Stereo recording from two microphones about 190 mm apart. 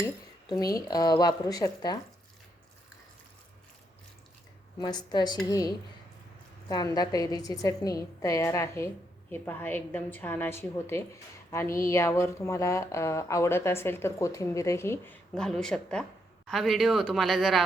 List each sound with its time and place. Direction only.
0.0 s a woman's voice: 20° left (ahead or behind)
4.8 s a woman's voice: 20° left (ahead or behind); by 17.6 s centre (ahead or behind)